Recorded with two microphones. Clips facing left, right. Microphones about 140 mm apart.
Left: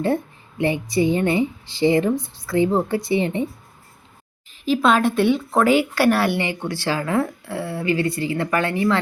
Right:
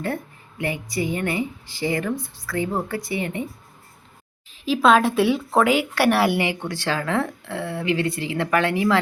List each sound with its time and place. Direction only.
0.6 s speech: 25° left (ahead or behind)
4.6 s speech: centre (ahead or behind)
6.2 s speech: 10° right (ahead or behind)
6.6 s speech: 10° left (ahead or behind)